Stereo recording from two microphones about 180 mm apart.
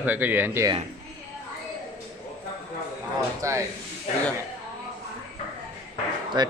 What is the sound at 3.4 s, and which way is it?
Speech, 15° right (ahead or behind).